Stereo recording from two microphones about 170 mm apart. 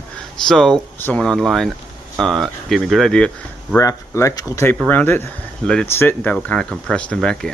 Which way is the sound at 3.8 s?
20° left (ahead or behind).